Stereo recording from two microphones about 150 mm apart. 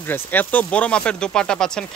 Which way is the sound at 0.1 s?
10° left (ahead or behind).